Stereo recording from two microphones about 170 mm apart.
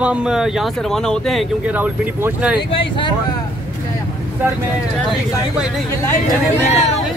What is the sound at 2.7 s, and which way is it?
Speech, 30° left (ahead or behind).